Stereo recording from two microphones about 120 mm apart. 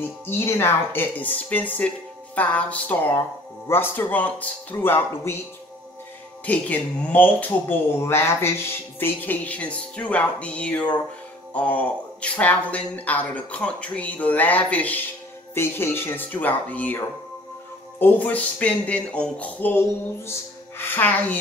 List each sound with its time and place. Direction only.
0.3 s speech: 20° left (ahead or behind)
6.4 s speech: 10° left (ahead or behind)